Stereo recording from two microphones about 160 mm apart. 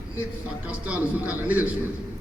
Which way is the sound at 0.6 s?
10° right (ahead or behind).